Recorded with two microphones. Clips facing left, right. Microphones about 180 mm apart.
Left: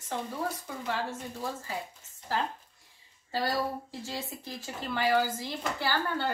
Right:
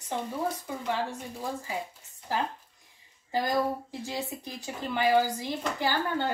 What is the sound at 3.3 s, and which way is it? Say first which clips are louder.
A woman's voice: right 3 dB; 15° right (ahead or behind).